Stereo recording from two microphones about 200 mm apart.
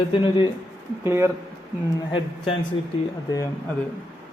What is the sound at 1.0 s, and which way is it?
Speech, 10° right (ahead or behind).